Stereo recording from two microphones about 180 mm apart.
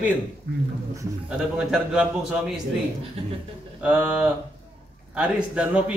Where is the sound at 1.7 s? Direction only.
5° right (ahead or behind).